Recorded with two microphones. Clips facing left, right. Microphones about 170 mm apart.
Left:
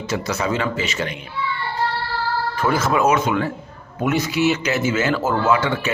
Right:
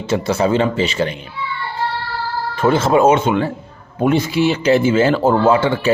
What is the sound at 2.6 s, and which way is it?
A man's voice, 25° right (ahead or behind).